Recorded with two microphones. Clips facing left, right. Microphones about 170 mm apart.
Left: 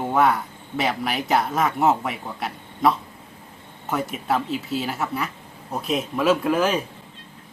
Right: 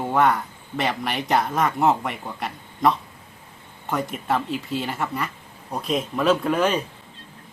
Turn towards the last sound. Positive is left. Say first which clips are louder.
# even
turn(degrees=5)  # may be behind; listen again after turning